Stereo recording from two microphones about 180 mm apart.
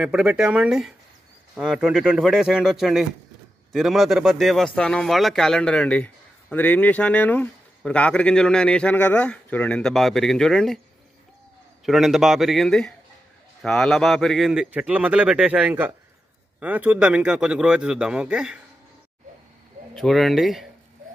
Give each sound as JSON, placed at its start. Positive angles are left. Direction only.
{"t": 0.0, "sound": "speech", "side_deg": -5}
{"t": 11.8, "sound": "speech", "side_deg": 0}
{"t": 20.0, "sound": "speech", "side_deg": 0}